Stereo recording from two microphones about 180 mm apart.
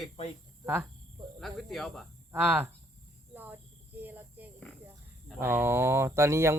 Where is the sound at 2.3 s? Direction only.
10° right (ahead or behind).